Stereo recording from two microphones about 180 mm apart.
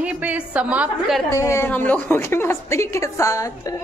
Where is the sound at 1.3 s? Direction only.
15° left (ahead or behind).